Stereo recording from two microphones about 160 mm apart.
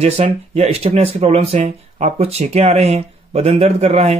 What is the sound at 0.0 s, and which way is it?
Speech, 40° right (ahead or behind).